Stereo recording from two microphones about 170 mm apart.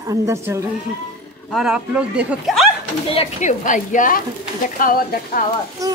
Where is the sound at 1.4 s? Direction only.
Centre (ahead or behind).